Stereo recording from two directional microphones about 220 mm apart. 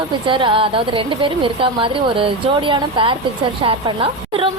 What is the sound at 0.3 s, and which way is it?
Speech, 20° right (ahead or behind).